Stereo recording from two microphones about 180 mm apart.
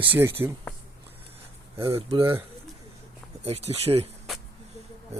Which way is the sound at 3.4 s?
35° right (ahead or behind).